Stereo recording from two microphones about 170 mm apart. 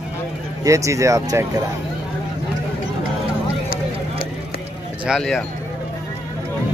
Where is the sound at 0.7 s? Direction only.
20° right (ahead or behind).